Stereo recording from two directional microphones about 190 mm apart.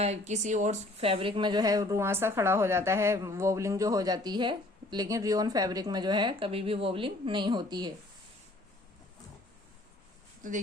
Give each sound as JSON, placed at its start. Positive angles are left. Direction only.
{"t": 0.0, "sound": "a woman's voice", "side_deg": -35}